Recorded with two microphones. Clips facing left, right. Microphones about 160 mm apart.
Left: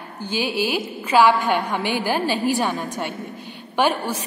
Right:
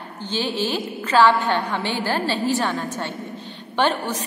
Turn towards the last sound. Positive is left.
turn(degrees=10)  # may be behind; listen again after turning